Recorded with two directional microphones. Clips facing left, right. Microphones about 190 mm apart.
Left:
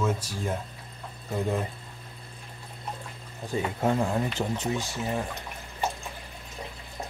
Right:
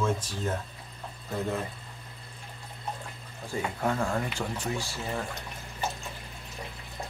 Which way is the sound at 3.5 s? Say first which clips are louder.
Left 4 dB; 20° left (ahead or behind).